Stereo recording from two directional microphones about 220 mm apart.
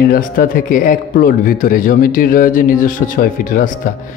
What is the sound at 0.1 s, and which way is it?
A man's voice, 40° left (ahead or behind).